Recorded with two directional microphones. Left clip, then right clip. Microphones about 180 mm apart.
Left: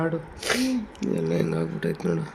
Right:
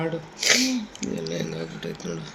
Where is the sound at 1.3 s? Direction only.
70° left (ahead or behind).